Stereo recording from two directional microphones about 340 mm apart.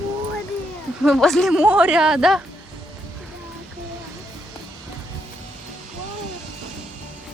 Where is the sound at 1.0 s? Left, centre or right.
Centre.